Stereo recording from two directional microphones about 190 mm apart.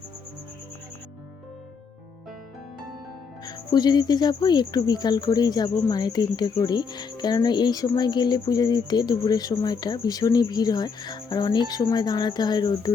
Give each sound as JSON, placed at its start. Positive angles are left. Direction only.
{"t": 3.4, "sound": "speech", "side_deg": 20}